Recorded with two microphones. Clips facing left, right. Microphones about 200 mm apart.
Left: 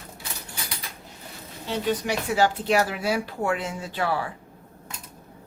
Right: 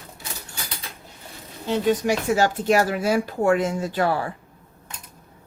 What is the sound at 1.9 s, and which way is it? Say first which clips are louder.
Speech: right 5 dB; 45° right (ahead or behind).